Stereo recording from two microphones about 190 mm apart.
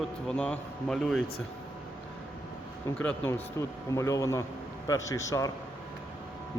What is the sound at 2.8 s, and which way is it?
Speech, 10° left (ahead or behind).